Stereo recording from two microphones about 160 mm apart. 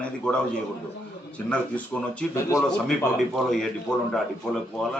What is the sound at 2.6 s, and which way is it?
Speech, 5° left (ahead or behind).